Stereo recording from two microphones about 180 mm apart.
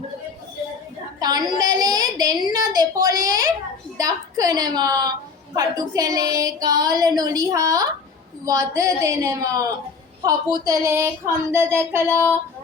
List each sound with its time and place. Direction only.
1.2 s a woman's voice: 20° right (ahead or behind)
5.5 s a sound: 20° right (ahead or behind)
10.2 s speech: 20° right (ahead or behind)